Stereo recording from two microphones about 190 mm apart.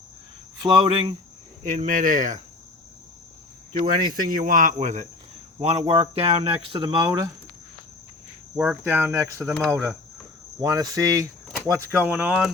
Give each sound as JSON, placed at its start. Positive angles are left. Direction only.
{"t": 0.6, "sound": "speech", "side_deg": -30}
{"t": 1.6, "sound": "speech", "side_deg": -40}
{"t": 3.7, "sound": "speech", "side_deg": -45}
{"t": 8.5, "sound": "speech", "side_deg": -5}
{"t": 10.6, "sound": "speech", "side_deg": -20}